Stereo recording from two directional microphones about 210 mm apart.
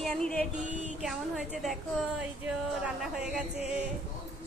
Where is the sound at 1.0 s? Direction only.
Centre (ahead or behind).